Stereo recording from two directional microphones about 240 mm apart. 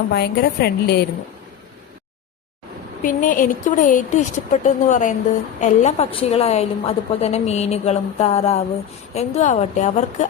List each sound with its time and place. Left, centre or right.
0.1 s a woman's voice: left
3.0 s a woman's voice: left